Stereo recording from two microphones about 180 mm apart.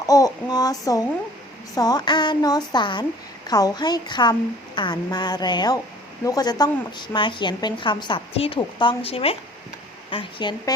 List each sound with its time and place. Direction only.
0.0 s a woman's voice: 20° left (ahead or behind)